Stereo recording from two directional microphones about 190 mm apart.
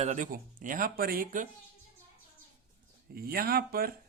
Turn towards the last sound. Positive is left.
turn(degrees=-50)  # may be behind; listen again after turning